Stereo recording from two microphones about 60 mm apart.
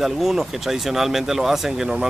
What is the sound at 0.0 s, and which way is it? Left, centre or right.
Speech, centre.